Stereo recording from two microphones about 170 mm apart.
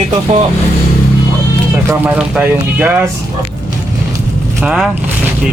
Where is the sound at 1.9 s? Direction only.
10° right (ahead or behind).